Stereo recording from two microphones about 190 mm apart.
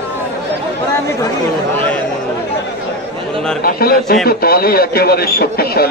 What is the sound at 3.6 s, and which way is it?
A man's voice, 55° left (ahead or behind).